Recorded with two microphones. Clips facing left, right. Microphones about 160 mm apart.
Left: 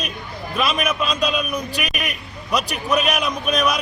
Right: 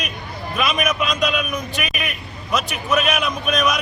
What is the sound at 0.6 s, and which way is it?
A man's voice, 30° left (ahead or behind).